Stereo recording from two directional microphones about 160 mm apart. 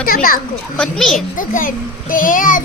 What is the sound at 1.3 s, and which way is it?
A child's voice, 55° left (ahead or behind).